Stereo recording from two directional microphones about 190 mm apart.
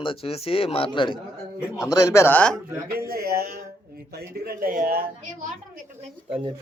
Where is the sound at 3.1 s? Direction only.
55° right (ahead or behind).